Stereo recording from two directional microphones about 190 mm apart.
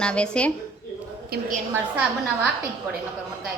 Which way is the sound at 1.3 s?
45° right (ahead or behind).